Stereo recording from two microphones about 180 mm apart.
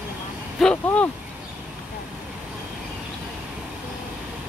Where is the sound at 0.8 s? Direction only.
10° left (ahead or behind).